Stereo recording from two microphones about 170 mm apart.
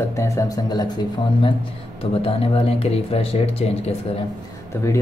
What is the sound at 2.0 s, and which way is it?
Speech, 35° left (ahead or behind).